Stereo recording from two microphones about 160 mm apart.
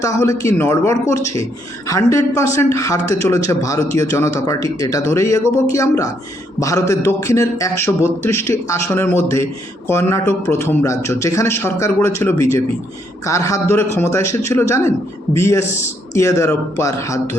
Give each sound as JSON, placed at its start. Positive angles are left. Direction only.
{"t": 0.0, "sound": "speech", "side_deg": 20}